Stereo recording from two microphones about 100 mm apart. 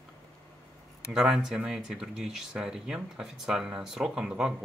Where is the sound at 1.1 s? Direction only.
5° right (ahead or behind).